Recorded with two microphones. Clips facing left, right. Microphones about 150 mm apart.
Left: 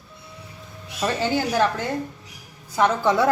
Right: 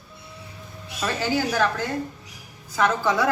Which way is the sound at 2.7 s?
25° left (ahead or behind).